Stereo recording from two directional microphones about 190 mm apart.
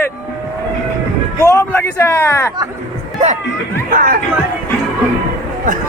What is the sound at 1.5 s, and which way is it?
Speech, 10° left (ahead or behind).